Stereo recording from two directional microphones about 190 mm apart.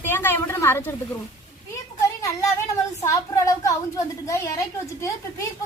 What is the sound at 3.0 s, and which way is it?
Speech, 15° left (ahead or behind).